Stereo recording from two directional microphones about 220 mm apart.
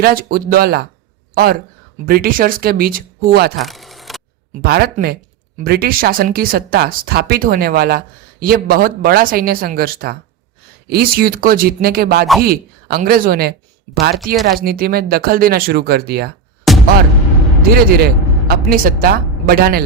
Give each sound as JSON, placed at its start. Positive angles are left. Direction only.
{"t": 0.0, "sound": "speech", "side_deg": -40}
{"t": 2.0, "sound": "speech", "side_deg": -40}
{"t": 3.6, "sound": "a sound", "side_deg": 0}
{"t": 4.6, "sound": "speech", "side_deg": -45}
{"t": 16.7, "sound": "music", "side_deg": 0}
{"t": 17.7, "sound": "speech", "side_deg": -45}